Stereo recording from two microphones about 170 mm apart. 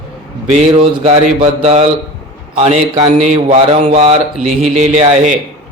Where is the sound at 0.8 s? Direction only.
35° right (ahead or behind).